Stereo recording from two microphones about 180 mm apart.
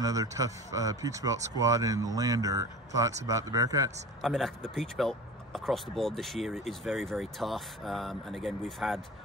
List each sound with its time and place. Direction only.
0.0 s speech: 20° right (ahead or behind)
4.2 s speech: centre (ahead or behind)